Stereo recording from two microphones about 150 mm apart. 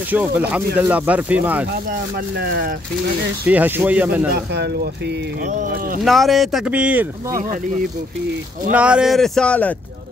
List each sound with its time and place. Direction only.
0.1 s speech: 10° right (ahead or behind)
1.7 s speech: 90° right
3.4 s speech: 10° right (ahead or behind)
5.5 s speech: 65° right (ahead or behind)
6.0 s speech: centre (ahead or behind)
8.7 s speech: 5° right (ahead or behind); by 9.8 s 10° left (ahead or behind)